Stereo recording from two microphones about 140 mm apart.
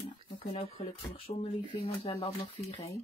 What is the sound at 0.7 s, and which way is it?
A woman's voice, 45° left (ahead or behind).